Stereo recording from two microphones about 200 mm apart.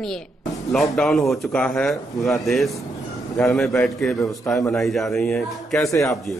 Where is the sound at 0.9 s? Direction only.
Centre (ahead or behind).